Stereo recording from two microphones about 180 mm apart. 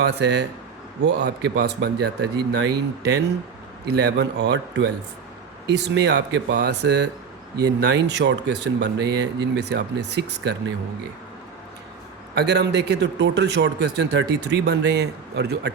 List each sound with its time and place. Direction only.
0.0 s a man's voice: 70° right (ahead or behind)
5.6 s a man's voice: 70° right (ahead or behind)
12.3 s a man's voice: 65° right (ahead or behind)